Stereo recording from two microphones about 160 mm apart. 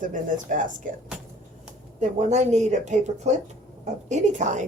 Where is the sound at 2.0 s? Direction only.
45° right (ahead or behind).